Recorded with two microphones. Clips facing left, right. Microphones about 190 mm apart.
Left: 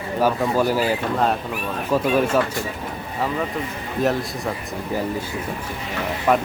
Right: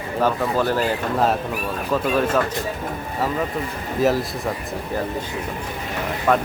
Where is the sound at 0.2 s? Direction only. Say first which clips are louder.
Left 1 dB; 10° left (ahead or behind).